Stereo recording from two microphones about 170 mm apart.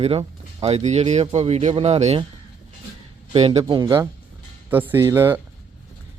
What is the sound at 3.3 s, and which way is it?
Speech, 35° right (ahead or behind).